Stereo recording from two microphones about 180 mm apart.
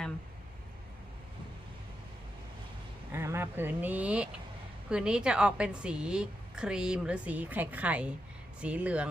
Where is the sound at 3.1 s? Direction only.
15° right (ahead or behind).